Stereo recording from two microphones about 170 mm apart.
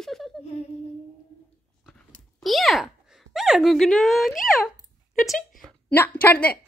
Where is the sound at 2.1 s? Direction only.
Centre (ahead or behind).